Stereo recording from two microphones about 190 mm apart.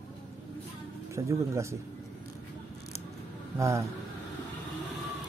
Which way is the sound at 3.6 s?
15° right (ahead or behind).